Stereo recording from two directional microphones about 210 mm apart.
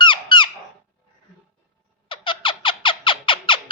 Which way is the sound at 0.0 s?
20° left (ahead or behind).